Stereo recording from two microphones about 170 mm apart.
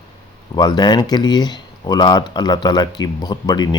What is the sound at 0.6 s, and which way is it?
Speech, 25° left (ahead or behind).